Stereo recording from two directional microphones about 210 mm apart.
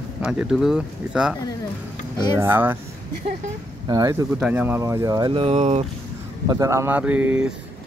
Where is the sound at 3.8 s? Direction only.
15° right (ahead or behind).